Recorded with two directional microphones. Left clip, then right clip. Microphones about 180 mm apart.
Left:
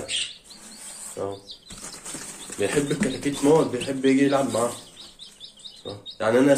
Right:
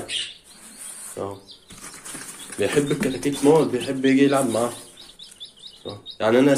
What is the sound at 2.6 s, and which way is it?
Speech, 25° right (ahead or behind).